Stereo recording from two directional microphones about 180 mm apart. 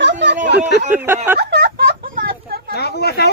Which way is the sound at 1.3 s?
65° right (ahead or behind).